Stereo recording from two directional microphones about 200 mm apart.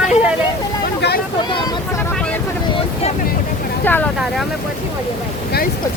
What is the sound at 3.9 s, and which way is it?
Speech, 10° left (ahead or behind).